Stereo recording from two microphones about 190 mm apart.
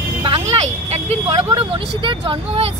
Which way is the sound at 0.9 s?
30° right (ahead or behind).